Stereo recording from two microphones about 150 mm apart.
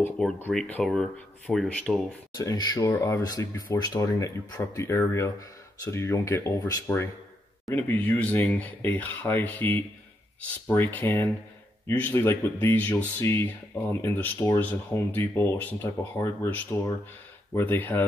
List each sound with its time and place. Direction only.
0.4 s speech: 10° left (ahead or behind)
2.3 s speech: 25° left (ahead or behind)